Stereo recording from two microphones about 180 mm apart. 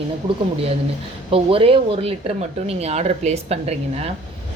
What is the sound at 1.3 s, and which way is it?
A woman's voice, 30° right (ahead or behind).